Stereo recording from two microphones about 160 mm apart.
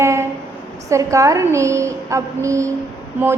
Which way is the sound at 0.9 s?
20° right (ahead or behind).